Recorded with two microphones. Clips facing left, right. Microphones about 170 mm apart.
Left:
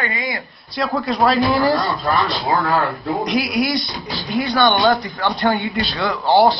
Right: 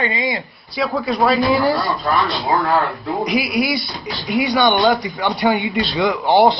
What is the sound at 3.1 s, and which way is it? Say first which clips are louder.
A man's voice: right 1 dB; 5° right (ahead or behind).